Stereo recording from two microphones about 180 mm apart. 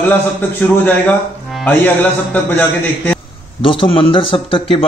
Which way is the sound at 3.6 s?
30° left (ahead or behind).